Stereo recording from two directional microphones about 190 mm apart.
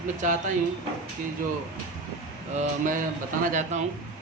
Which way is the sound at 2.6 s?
45° right (ahead or behind).